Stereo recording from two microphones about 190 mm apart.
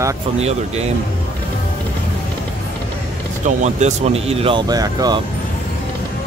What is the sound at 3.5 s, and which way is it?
Speech, 40° right (ahead or behind).